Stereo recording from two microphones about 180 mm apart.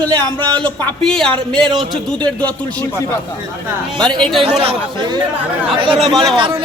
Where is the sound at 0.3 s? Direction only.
25° right (ahead or behind).